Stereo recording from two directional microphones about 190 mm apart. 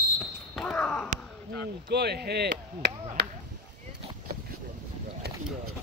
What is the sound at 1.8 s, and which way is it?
Speech, 60° right (ahead or behind).